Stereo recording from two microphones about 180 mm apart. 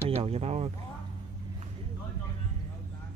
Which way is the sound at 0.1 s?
35° right (ahead or behind).